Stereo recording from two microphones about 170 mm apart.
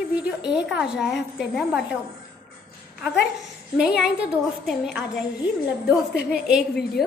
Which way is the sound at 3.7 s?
5° right (ahead or behind).